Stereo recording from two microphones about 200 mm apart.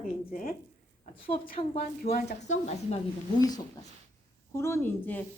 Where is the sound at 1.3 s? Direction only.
30° left (ahead or behind).